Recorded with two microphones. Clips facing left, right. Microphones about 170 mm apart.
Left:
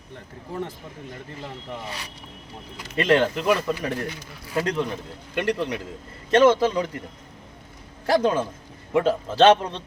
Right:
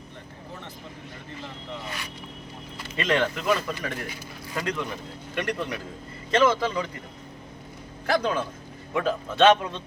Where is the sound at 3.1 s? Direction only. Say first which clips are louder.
Left 5 dB; 30° left (ahead or behind).